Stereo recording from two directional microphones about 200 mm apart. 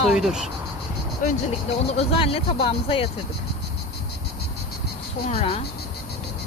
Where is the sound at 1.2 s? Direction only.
45° left (ahead or behind).